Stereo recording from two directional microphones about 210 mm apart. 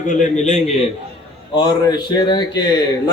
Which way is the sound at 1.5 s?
20° left (ahead or behind).